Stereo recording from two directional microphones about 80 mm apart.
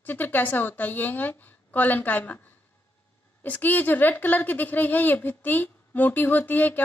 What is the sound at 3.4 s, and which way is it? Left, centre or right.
A woman's voice, left.